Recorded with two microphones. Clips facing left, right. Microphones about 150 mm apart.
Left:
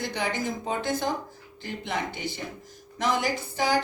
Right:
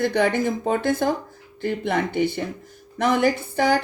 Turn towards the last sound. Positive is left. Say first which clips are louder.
# right 7 dB
turn(degrees=-55)  # may be behind; listen again after turning